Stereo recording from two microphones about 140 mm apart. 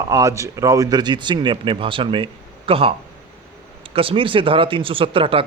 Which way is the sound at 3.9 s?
40° right (ahead or behind).